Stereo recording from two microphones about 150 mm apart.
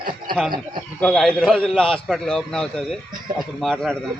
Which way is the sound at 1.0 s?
Centre (ahead or behind).